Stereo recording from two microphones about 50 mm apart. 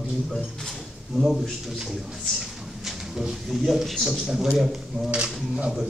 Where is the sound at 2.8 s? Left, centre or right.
Centre.